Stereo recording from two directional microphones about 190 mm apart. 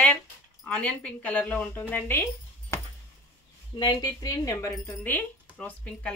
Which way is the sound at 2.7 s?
15° left (ahead or behind).